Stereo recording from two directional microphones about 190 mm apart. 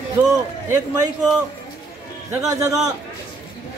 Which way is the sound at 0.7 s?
10° right (ahead or behind).